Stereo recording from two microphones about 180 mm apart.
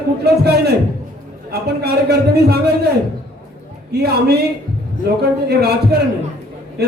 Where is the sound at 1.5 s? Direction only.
65° right (ahead or behind).